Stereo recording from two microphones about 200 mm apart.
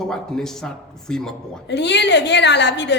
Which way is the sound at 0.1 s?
Centre (ahead or behind).